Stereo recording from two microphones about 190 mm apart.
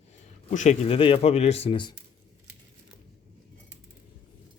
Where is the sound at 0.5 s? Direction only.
40° left (ahead or behind).